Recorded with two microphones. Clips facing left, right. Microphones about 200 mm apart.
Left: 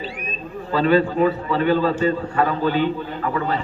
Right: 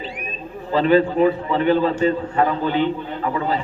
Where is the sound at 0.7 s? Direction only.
20° right (ahead or behind).